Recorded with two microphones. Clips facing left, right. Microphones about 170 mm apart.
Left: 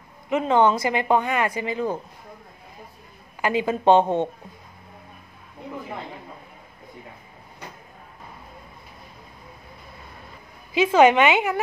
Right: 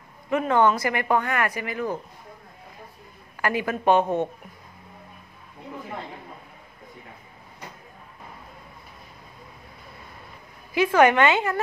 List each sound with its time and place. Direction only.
0.3 s speech: 20° left (ahead or behind)
3.3 s speech: 20° left (ahead or behind)
10.7 s a woman's voice: 20° left (ahead or behind)